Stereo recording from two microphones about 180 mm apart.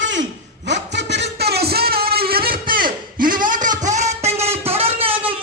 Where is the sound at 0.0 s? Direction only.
90° right.